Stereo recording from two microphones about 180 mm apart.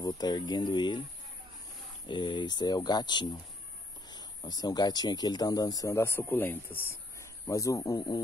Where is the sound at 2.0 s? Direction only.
25° left (ahead or behind).